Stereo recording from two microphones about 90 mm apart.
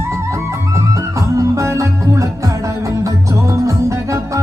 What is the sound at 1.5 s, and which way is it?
Music, 35° right (ahead or behind).